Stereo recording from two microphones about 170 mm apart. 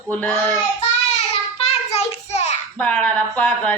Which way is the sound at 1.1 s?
40° left (ahead or behind).